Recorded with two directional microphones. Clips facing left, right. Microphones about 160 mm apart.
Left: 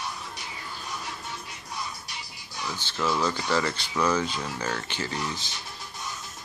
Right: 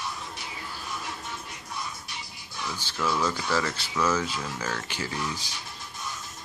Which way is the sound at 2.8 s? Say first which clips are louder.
Left 1 dB; 10° right (ahead or behind).